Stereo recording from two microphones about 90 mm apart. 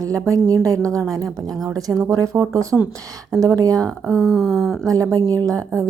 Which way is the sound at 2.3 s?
10° right (ahead or behind).